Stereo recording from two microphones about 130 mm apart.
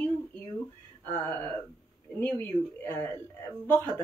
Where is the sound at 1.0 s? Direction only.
15° left (ahead or behind).